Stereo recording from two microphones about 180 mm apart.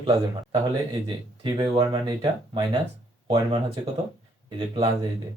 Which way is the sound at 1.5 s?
30° right (ahead or behind).